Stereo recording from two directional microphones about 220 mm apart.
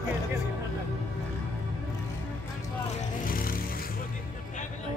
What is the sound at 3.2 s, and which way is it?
Music, 40° left (ahead or behind).